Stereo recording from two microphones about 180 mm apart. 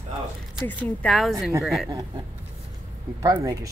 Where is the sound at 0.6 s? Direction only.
10° left (ahead or behind).